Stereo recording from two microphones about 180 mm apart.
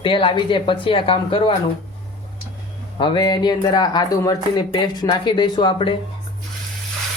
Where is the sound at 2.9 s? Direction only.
25° left (ahead or behind).